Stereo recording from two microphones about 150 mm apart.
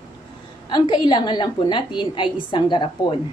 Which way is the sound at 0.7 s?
30° left (ahead or behind).